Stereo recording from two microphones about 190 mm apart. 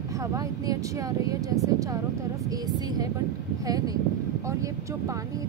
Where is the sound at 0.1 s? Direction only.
15° right (ahead or behind).